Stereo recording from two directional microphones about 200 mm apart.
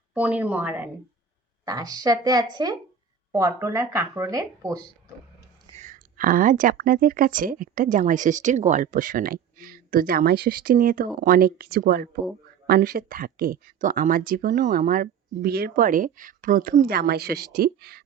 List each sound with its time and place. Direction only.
0.1 s a woman's voice: 5° right (ahead or behind)
5.7 s speech: 40° right (ahead or behind)